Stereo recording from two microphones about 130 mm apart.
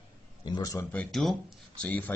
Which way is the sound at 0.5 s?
30° left (ahead or behind).